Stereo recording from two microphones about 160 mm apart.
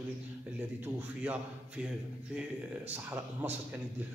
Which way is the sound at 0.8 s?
10° right (ahead or behind).